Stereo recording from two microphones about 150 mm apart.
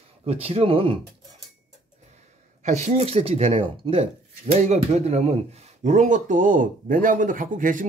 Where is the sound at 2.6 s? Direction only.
50° right (ahead or behind).